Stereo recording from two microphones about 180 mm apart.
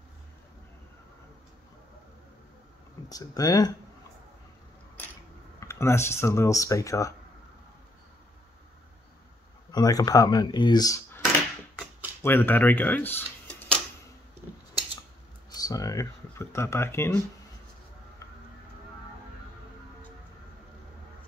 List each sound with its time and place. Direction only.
3.1 s speech: 20° left (ahead or behind)
5.6 s speech: 15° left (ahead or behind)
9.7 s speech: 20° left (ahead or behind)
15.5 s speech: 20° left (ahead or behind)